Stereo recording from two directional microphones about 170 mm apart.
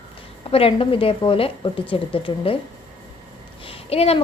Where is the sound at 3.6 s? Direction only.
35° left (ahead or behind).